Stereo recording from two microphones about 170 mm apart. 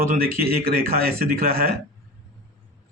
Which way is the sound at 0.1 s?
65° right (ahead or behind).